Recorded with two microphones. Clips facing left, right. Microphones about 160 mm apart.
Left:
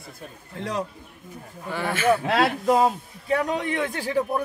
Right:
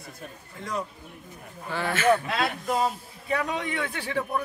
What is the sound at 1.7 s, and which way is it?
Speech, 15° left (ahead or behind).